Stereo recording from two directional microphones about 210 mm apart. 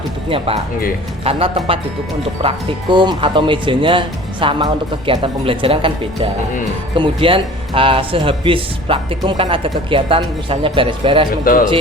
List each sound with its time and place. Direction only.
0.3 s speech: 25° right (ahead or behind)
11.4 s speech: 40° left (ahead or behind)